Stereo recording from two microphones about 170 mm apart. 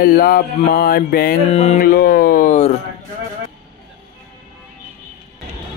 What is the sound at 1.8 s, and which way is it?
Speech, 60° left (ahead or behind).